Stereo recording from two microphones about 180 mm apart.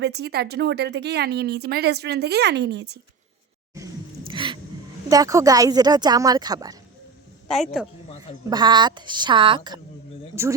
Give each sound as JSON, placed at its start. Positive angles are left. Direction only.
{"t": 0.0, "sound": "a woman's voice", "side_deg": -65}
{"t": 4.3, "sound": "a sound", "side_deg": -25}
{"t": 5.0, "sound": "speech", "side_deg": -20}
{"t": 7.5, "sound": "speech", "side_deg": 0}
{"t": 8.4, "sound": "speech", "side_deg": -25}
{"t": 10.3, "sound": "speech", "side_deg": -15}